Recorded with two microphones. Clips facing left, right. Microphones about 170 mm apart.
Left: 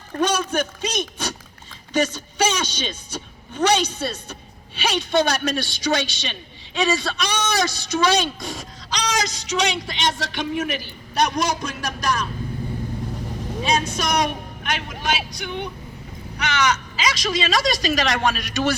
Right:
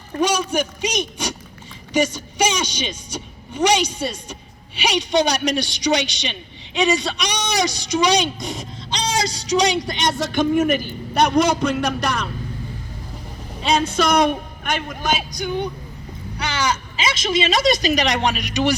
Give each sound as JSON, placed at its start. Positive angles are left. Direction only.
{"t": 0.2, "sound": "a man's voice", "side_deg": -10}
{"t": 13.9, "sound": "a woman's voice", "side_deg": -55}